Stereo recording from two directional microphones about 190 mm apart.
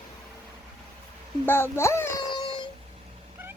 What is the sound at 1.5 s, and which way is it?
Music, 15° left (ahead or behind).